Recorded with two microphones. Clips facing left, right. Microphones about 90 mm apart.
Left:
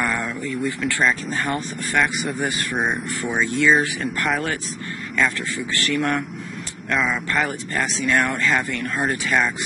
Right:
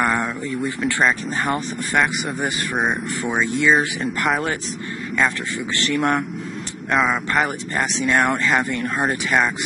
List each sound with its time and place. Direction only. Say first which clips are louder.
0.0 s a sound: right 4 dB; 30° right (ahead or behind)
0.4 s speech: right 1 dB; 25° right (ahead or behind)
5.8 s speech: right 2 dB; 25° right (ahead or behind)